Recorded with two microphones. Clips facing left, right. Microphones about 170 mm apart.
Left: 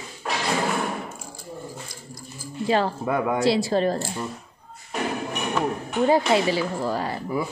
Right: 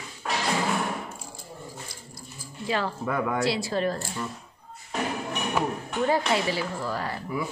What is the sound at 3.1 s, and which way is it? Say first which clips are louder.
A woman's voice: left 4 dB; 20° left (ahead or behind).